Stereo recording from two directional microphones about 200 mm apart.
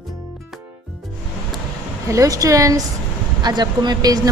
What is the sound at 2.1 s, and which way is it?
Speech, 15° right (ahead or behind).